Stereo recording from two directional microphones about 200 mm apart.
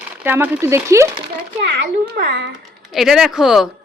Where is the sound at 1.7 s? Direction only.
55° right (ahead or behind).